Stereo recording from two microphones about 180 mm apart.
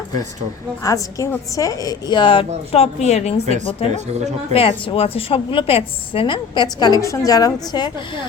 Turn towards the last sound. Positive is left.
turn(degrees=20)  # may be behind; listen again after turning